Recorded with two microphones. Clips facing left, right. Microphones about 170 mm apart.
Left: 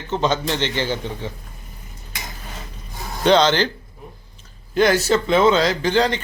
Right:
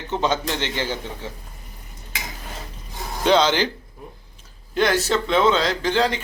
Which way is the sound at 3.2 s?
5° right (ahead or behind).